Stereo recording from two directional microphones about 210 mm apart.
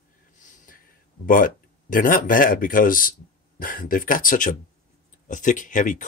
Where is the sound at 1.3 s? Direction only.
40° left (ahead or behind).